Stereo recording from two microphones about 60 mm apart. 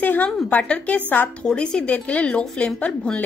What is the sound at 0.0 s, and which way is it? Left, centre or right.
Speech, left.